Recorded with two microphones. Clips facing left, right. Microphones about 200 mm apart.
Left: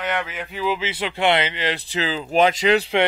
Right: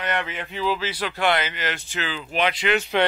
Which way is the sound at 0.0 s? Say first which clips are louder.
Left 1 dB; centre (ahead or behind).